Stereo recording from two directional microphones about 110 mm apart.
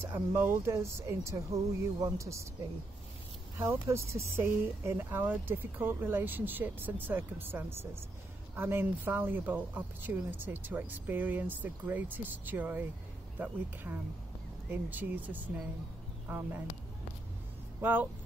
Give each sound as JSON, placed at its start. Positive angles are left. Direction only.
{"t": 0.0, "sound": "speech", "side_deg": -20}
{"t": 3.5, "sound": "speech", "side_deg": -25}
{"t": 13.9, "sound": "speech", "side_deg": -20}
{"t": 17.7, "sound": "speech", "side_deg": -20}